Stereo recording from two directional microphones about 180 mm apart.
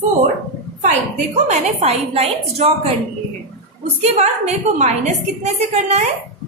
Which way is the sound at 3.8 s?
40° right (ahead or behind).